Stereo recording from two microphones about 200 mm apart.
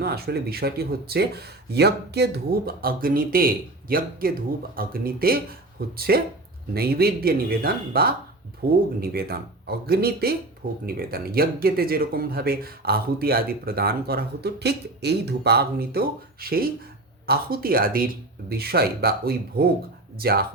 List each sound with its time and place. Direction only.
0.0 s speech: 50° right (ahead or behind)